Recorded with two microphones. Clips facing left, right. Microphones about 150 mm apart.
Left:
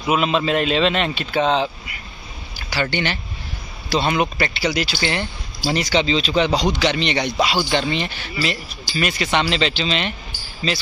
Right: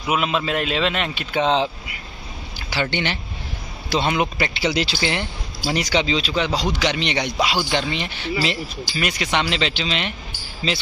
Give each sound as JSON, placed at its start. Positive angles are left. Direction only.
{"t": 0.0, "sound": "speech", "side_deg": -5}
{"t": 2.7, "sound": "speech", "side_deg": -20}
{"t": 6.8, "sound": "speech", "side_deg": -15}